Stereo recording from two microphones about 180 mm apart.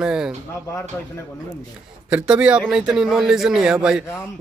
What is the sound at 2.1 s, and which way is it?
A man's voice, 5° right (ahead or behind).